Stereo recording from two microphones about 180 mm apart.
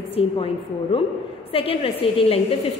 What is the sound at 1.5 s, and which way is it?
Speech, 30° left (ahead or behind).